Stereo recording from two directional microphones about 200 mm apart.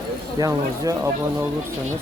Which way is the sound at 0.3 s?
15° right (ahead or behind).